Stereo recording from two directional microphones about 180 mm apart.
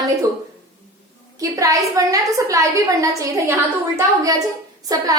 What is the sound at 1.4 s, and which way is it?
A woman's voice, 20° right (ahead or behind).